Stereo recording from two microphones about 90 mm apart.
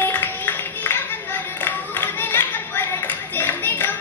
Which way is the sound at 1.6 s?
20° left (ahead or behind).